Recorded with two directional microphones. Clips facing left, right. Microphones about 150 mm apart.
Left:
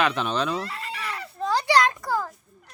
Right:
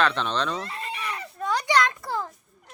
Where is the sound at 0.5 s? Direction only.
25° right (ahead or behind).